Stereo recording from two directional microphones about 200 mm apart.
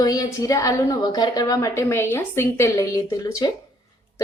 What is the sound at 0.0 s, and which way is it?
A woman's voice, 20° left (ahead or behind).